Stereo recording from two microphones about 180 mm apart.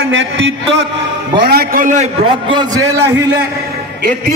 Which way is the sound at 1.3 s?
60° right (ahead or behind).